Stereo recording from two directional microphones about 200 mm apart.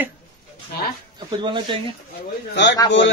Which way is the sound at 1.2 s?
25° right (ahead or behind).